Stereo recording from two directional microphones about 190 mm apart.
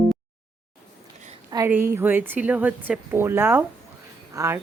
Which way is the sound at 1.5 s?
15° right (ahead or behind).